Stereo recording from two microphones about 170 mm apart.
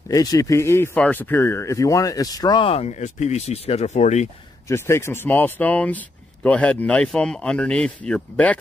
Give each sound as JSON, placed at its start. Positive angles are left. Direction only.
{"t": 0.1, "sound": "speech", "side_deg": 20}
{"t": 4.6, "sound": "speech", "side_deg": 15}